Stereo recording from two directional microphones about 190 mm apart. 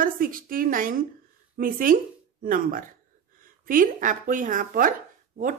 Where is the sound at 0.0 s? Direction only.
50° right (ahead or behind).